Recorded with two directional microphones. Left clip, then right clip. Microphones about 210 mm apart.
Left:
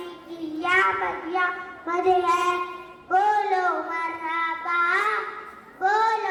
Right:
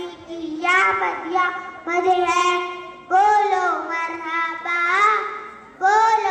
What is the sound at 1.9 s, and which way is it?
Child singing, 35° right (ahead or behind).